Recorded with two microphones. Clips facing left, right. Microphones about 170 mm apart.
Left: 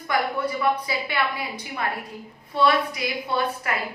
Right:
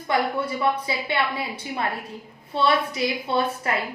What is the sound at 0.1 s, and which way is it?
A woman's voice, 25° right (ahead or behind).